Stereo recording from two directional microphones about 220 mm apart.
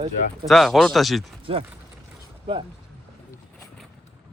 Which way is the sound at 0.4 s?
Centre (ahead or behind).